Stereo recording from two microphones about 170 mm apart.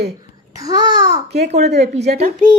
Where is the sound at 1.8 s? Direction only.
40° right (ahead or behind).